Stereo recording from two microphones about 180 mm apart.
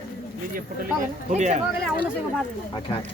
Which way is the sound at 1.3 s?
40° right (ahead or behind).